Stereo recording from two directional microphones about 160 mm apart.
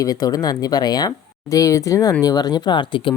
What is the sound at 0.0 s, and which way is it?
Speech, 25° left (ahead or behind).